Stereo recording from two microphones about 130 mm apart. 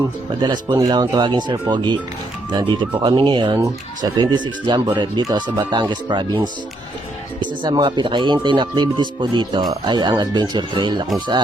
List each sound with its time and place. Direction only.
0.4 s speech: 35° right (ahead or behind)